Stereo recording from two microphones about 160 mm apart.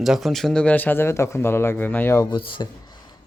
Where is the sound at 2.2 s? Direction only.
30° left (ahead or behind).